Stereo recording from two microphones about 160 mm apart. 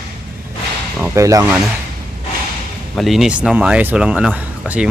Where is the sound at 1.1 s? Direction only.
20° right (ahead or behind).